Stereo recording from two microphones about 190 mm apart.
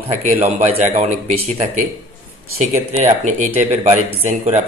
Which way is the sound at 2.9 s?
35° right (ahead or behind).